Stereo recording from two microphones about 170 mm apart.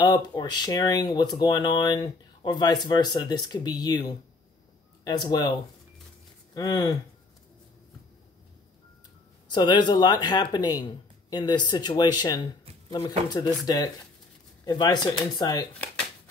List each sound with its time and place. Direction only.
0.0 s speech: 25° left (ahead or behind)
6.5 s speech: 20° left (ahead or behind)
9.5 s speech: 25° left (ahead or behind)
14.6 s speech: 25° left (ahead or behind)